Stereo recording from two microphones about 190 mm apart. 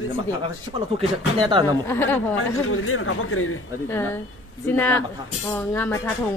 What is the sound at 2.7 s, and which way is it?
Speech, 90° left.